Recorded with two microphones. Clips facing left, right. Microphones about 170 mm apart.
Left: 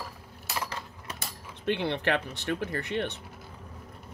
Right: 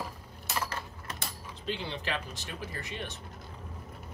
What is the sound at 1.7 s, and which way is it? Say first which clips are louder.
Speech: left 8 dB; 65° left (ahead or behind).